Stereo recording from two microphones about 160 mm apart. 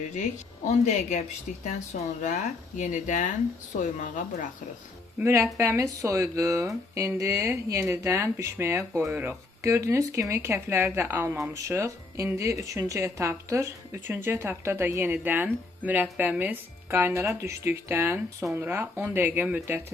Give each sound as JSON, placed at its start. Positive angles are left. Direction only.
{"t": 0.7, "sound": "speech", "side_deg": 45}
{"t": 5.2, "sound": "speech", "side_deg": -15}